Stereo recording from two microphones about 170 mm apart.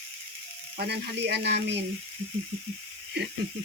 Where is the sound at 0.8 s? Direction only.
75° right (ahead or behind).